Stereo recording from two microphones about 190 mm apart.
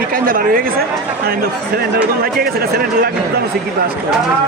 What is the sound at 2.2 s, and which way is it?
Speech, 55° right (ahead or behind).